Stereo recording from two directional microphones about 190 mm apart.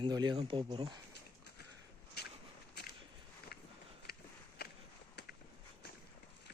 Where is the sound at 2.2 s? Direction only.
55° left (ahead or behind).